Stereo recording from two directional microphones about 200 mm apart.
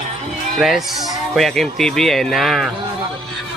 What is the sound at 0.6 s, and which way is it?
Speech, centre (ahead or behind).